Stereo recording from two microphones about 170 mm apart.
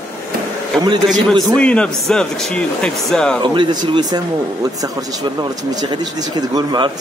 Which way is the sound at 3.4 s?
25° right (ahead or behind).